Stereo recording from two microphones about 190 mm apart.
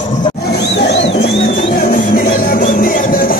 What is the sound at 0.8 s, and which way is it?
Music, 65° left (ahead or behind).